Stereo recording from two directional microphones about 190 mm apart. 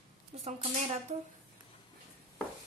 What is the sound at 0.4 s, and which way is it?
Speech, 35° right (ahead or behind).